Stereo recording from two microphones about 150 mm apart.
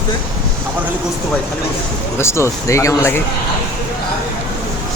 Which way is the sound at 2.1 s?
15° left (ahead or behind).